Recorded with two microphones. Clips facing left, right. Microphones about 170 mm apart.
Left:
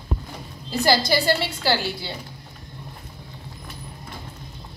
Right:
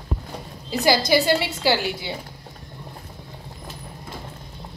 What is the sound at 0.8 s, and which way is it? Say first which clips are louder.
A woman's voice: right 2 dB; 15° right (ahead or behind).